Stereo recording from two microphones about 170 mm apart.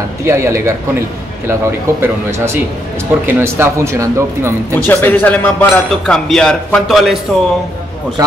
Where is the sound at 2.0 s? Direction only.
15° right (ahead or behind).